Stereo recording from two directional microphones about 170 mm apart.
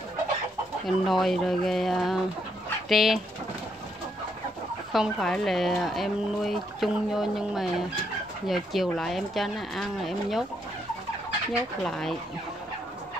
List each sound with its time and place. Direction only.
0.8 s speech: centre (ahead or behind)
4.9 s speech: centre (ahead or behind)
11.8 s speech: centre (ahead or behind)